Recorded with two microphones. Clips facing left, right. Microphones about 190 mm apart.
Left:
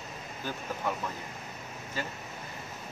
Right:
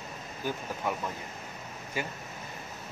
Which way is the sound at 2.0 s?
15° right (ahead or behind).